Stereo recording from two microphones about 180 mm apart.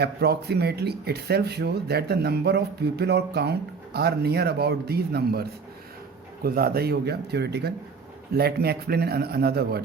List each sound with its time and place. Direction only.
0.0 s speech: 65° right (ahead or behind)